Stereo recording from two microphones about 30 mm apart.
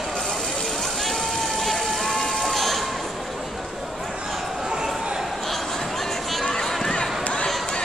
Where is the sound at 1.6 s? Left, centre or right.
Centre.